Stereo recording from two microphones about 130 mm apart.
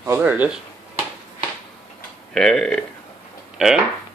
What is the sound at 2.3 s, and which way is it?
Speech, 5° left (ahead or behind).